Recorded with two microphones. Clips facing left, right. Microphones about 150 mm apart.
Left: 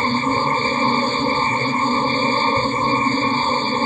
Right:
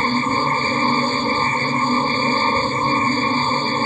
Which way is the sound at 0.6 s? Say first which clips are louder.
Even; 20° left (ahead or behind).